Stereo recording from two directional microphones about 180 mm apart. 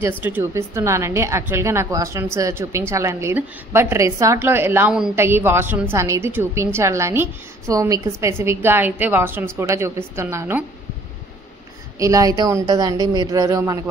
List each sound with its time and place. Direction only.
0.2 s a woman's voice: 10° right (ahead or behind)
12.0 s a woman's voice: 20° right (ahead or behind)